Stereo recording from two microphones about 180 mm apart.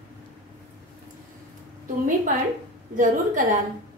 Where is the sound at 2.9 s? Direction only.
45° right (ahead or behind).